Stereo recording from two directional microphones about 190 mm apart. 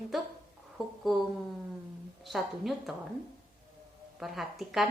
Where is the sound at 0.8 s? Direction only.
5° right (ahead or behind).